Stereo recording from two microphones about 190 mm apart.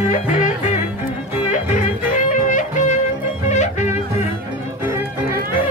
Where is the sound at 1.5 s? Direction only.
40° left (ahead or behind).